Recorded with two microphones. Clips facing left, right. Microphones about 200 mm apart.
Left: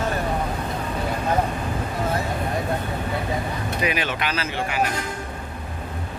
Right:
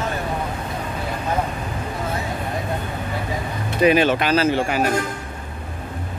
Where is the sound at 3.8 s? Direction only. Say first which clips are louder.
Right 11 dB; 30° right (ahead or behind).